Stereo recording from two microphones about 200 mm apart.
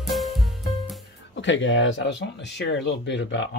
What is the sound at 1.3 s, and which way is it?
Speech, 65° left (ahead or behind).